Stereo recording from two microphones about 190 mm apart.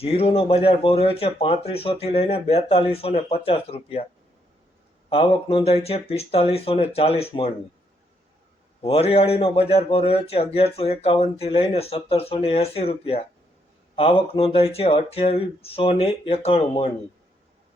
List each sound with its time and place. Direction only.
0.0 s speech: 30° left (ahead or behind)
5.0 s speech: 30° left (ahead or behind)
8.8 s speech: 30° left (ahead or behind)